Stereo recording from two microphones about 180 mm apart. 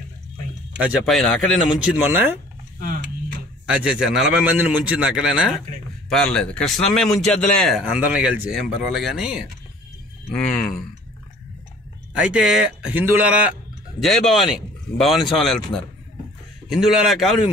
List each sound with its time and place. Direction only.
0.7 s speech: 5° right (ahead or behind)
2.8 s a sound: 55° right (ahead or behind)
3.6 s speech: 5° right (ahead or behind)
7.8 s speech: 5° right (ahead or behind)
12.1 s speech: 5° right (ahead or behind)